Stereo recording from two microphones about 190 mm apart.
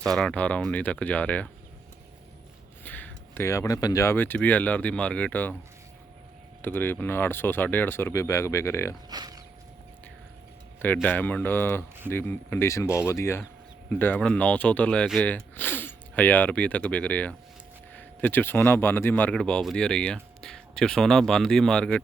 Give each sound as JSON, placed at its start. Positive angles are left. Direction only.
{"t": 0.0, "sound": "speech", "side_deg": 0}
{"t": 2.8, "sound": "speech", "side_deg": 10}
{"t": 6.6, "sound": "speech", "side_deg": 10}
{"t": 9.0, "sound": "speech", "side_deg": -20}
{"t": 10.8, "sound": "speech", "side_deg": 10}